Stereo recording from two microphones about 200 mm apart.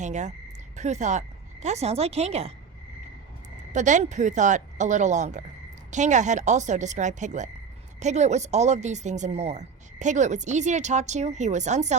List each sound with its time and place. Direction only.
0.0 s a woman's voice: 35° right (ahead or behind)
3.7 s a woman's voice: 35° right (ahead or behind)